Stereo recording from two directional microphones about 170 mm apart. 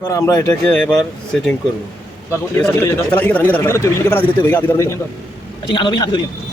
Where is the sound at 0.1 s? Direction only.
20° left (ahead or behind).